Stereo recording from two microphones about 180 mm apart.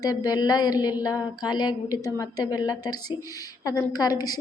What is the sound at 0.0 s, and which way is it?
Speech, 20° left (ahead or behind).